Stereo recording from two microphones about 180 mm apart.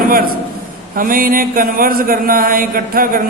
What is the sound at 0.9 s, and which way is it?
Mantra, 50° right (ahead or behind).